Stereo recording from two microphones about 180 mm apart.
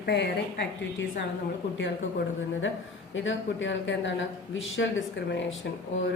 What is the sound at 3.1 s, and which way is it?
Speech, 90° left.